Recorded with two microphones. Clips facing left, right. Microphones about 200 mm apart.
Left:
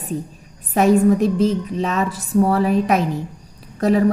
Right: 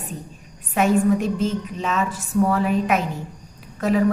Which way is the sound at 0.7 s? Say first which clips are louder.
Left 4 dB; 35° left (ahead or behind).